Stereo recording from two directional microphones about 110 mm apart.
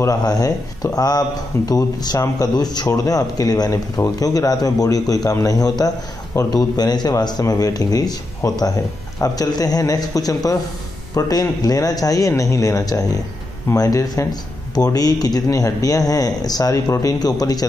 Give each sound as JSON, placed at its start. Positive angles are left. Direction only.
{"t": 0.0, "sound": "speech", "side_deg": 35}